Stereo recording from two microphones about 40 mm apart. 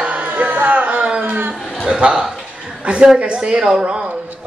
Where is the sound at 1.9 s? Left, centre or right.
Right.